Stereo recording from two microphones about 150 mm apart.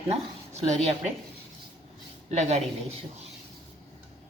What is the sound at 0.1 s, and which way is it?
A woman's voice, 45° right (ahead or behind).